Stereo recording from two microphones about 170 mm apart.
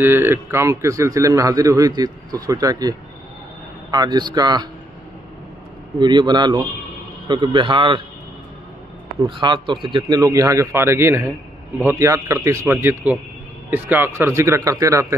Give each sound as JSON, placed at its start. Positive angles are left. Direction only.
{"t": 0.0, "sound": "a man's voice", "side_deg": -15}
{"t": 5.9, "sound": "a man's voice", "side_deg": -25}
{"t": 9.2, "sound": "a man's voice", "side_deg": -30}